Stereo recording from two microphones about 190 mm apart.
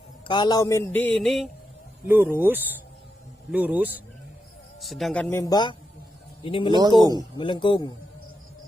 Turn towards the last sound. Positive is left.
turn(degrees=25)  # may be behind; listen again after turning